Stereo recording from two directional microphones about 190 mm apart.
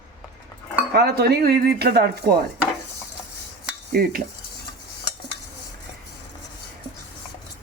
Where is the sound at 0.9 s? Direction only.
55° right (ahead or behind).